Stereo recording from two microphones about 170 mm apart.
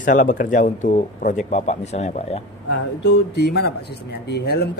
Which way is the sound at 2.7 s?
80° left.